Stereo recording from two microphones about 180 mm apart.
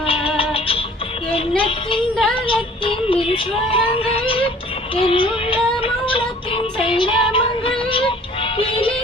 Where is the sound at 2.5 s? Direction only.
30° left (ahead or behind).